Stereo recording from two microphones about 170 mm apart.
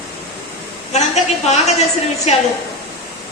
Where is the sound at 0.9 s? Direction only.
40° left (ahead or behind).